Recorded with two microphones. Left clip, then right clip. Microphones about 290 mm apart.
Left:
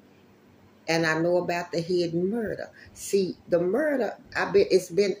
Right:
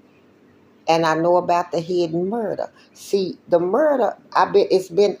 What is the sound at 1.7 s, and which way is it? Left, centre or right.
Speech, centre.